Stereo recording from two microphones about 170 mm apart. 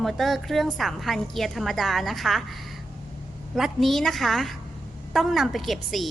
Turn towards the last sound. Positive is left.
turn(degrees=0)  # may be behind; listen again after turning